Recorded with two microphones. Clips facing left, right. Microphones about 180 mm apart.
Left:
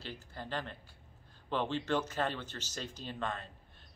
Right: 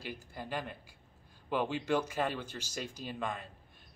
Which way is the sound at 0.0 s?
10° right (ahead or behind).